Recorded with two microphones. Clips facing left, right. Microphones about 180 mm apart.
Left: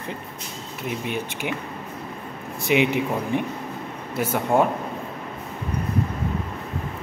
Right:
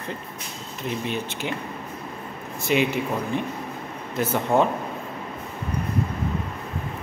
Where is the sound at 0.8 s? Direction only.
15° left (ahead or behind).